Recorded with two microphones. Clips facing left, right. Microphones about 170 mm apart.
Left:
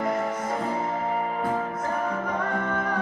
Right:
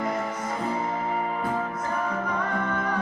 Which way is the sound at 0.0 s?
50° left (ahead or behind).